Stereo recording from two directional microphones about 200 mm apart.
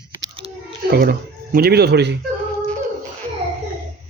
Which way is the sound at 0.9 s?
45° right (ahead or behind).